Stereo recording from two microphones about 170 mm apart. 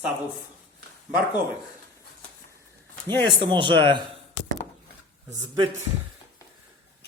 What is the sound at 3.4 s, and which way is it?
Speech, 30° right (ahead or behind).